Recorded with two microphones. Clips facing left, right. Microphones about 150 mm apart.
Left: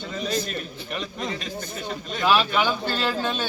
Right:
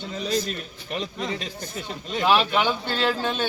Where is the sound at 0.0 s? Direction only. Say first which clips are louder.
Right 1 dB; 30° right (ahead or behind).